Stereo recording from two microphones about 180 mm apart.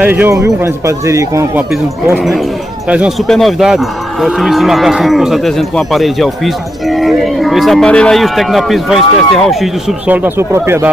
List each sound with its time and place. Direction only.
0.0 s a man's voice: 10° right (ahead or behind)
2.9 s livestock: 5° right (ahead or behind)